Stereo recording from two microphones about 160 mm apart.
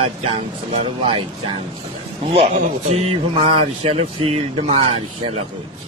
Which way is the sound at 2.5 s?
45° right (ahead or behind).